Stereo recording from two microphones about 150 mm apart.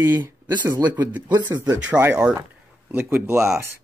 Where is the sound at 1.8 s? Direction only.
10° right (ahead or behind).